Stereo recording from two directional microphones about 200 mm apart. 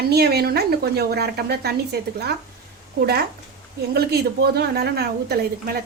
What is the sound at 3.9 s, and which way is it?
A woman's voice, 55° right (ahead or behind).